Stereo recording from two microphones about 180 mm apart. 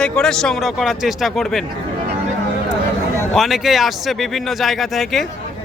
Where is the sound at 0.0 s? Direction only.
5° left (ahead or behind).